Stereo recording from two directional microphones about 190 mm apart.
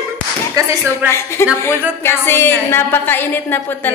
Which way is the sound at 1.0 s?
15° left (ahead or behind).